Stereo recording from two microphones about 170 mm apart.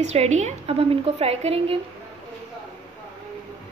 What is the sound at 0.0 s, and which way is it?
A woman's voice, 40° right (ahead or behind).